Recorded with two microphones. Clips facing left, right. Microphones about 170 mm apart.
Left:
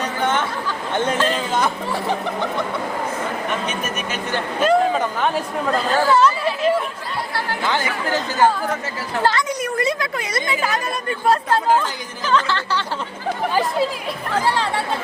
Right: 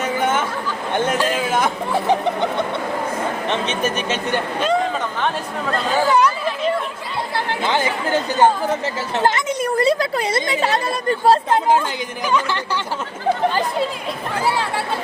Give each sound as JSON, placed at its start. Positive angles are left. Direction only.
{"t": 0.0, "sound": "chatter", "side_deg": -10}
{"t": 0.9, "sound": "a woman's voice", "side_deg": -10}
{"t": 4.6, "sound": "speech", "side_deg": 5}
{"t": 6.1, "sound": "speech", "side_deg": -15}
{"t": 6.4, "sound": "speech", "side_deg": 0}
{"t": 7.6, "sound": "a woman's voice", "side_deg": -20}
{"t": 12.3, "sound": "speech", "side_deg": -15}
{"t": 13.5, "sound": "speech", "side_deg": 5}